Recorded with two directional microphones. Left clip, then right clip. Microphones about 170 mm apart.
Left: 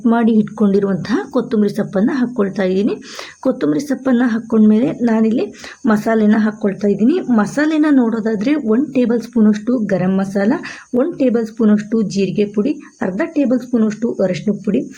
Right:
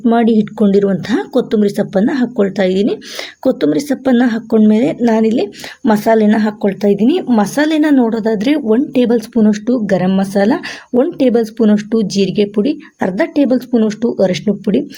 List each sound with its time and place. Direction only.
0.0 s a woman's voice: 25° right (ahead or behind)